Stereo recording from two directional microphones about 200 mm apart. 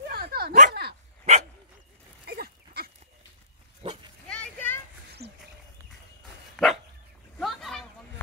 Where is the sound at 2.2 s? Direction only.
50° right (ahead or behind).